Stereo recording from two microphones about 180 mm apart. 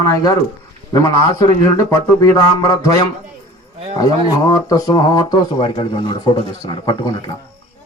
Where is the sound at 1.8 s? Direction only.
20° left (ahead or behind).